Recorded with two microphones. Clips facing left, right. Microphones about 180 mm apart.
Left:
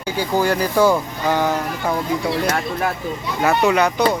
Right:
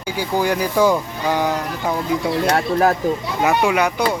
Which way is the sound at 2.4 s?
35° right (ahead or behind).